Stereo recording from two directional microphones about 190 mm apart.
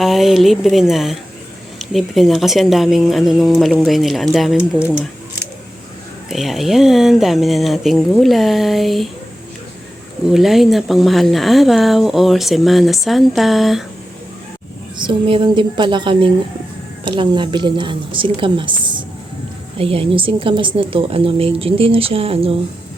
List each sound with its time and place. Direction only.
0.0 s speech: centre (ahead or behind)
6.3 s speech: centre (ahead or behind)
10.2 s speech: centre (ahead or behind)
14.9 s speech: 25° right (ahead or behind)